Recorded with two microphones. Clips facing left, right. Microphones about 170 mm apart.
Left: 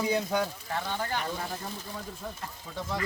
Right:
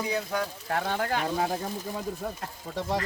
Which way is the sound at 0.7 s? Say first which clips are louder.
Right 4 dB; 60° right (ahead or behind).